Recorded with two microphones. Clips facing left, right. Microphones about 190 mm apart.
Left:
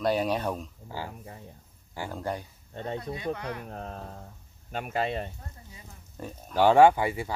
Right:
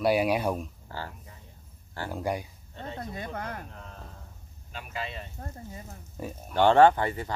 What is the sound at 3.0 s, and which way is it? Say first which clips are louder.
Speech: left 3 dB; 50° right (ahead or behind).